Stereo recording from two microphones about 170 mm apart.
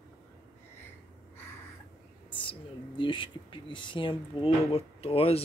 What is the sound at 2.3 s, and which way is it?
Speech, 30° left (ahead or behind).